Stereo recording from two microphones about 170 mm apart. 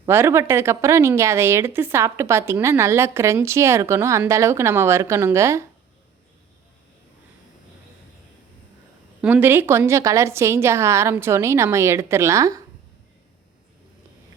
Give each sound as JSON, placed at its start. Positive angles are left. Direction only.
{"t": 0.0, "sound": "a woman's voice", "side_deg": -15}
{"t": 9.2, "sound": "a woman's voice", "side_deg": -10}